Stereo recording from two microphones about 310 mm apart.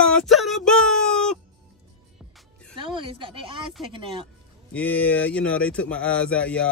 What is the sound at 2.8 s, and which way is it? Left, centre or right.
Speech, centre.